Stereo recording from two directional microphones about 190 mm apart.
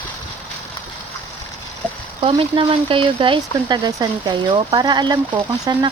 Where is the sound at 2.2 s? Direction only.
30° right (ahead or behind).